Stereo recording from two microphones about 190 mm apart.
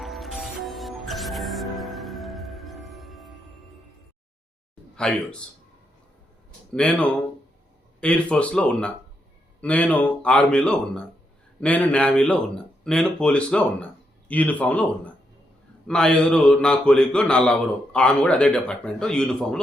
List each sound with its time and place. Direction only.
0.0 s music: centre (ahead or behind)
4.9 s a man's voice: 5° left (ahead or behind)
6.7 s speech: 5° left (ahead or behind)